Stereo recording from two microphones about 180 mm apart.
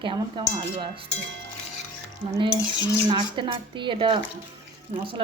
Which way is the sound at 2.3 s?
25° right (ahead or behind).